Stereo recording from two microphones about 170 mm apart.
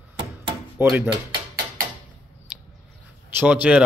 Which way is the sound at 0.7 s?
10° right (ahead or behind).